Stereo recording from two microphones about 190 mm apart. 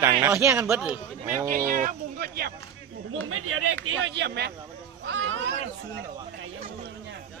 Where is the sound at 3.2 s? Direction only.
90° right; by 4.5 s 60° right (ahead or behind).